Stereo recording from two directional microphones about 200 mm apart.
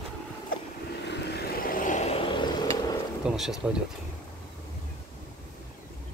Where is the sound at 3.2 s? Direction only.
5° right (ahead or behind).